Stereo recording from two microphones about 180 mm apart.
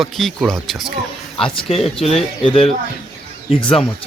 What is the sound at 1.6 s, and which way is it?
Speech, 35° left (ahead or behind).